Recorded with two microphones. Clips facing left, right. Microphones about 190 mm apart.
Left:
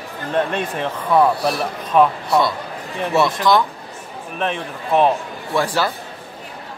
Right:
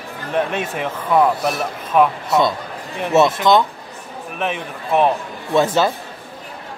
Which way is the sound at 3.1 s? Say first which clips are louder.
Right 4 dB; 20° right (ahead or behind).